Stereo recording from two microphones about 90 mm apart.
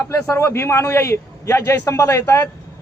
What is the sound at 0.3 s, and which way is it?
Speech, 30° left (ahead or behind).